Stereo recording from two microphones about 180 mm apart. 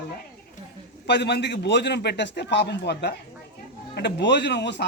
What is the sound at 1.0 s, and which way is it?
Speech, 70° left (ahead or behind).